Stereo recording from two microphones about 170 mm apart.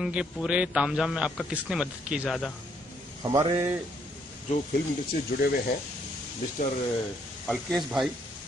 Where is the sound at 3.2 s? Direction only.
20° right (ahead or behind).